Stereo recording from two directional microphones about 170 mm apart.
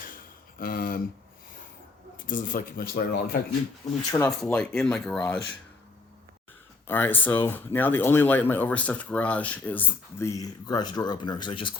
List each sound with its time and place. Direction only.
0.6 s a sound: 55° left (ahead or behind)
2.2 s speech: 50° left (ahead or behind)
4.1 s speech: 15° left (ahead or behind)
6.8 s speech: 10° left (ahead or behind); by 11.7 s 30° left (ahead or behind)